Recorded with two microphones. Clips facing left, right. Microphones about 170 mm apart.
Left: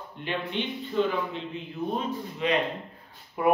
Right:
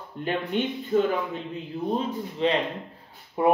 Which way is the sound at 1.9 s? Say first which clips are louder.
Right 5 dB; 30° right (ahead or behind).